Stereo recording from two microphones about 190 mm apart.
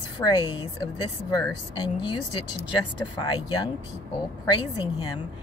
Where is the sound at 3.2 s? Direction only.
25° left (ahead or behind).